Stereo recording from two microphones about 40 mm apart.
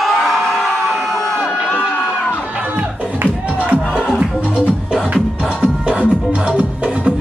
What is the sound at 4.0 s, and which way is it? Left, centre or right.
Music, centre.